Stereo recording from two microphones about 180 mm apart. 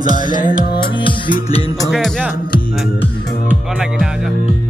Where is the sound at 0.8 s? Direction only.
30° left (ahead or behind).